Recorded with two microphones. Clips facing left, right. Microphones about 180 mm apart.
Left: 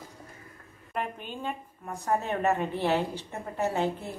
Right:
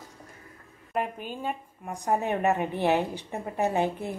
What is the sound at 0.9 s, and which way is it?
A woman's voice, 5° right (ahead or behind).